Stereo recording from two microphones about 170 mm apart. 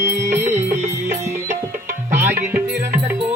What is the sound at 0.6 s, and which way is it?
Music, 45° right (ahead or behind).